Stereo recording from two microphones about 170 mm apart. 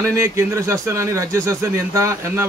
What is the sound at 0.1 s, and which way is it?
A man's voice, 15° right (ahead or behind).